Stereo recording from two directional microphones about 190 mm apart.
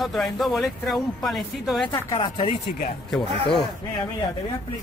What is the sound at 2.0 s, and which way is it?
Speech, 20° left (ahead or behind).